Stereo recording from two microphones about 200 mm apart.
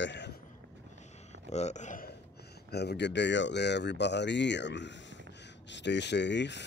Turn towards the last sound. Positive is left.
turn(degrees=60)  # may be behind; listen again after turning